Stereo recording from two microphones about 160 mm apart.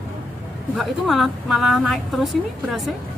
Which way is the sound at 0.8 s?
Centre (ahead or behind).